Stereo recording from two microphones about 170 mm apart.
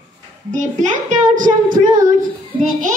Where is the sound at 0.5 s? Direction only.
50° right (ahead or behind).